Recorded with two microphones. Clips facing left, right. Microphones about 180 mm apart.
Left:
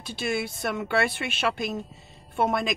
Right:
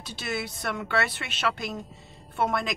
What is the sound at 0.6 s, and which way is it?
A woman's voice, 25° left (ahead or behind).